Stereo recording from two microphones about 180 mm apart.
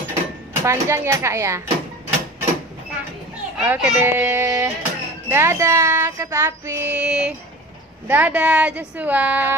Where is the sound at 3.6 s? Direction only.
5° right (ahead or behind).